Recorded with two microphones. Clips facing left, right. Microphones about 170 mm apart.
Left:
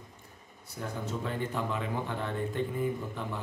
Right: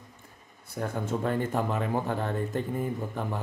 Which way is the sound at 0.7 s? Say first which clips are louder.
Right 5 dB; 50° right (ahead or behind).